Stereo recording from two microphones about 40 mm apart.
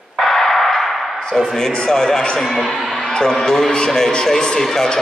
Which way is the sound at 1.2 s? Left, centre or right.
Centre.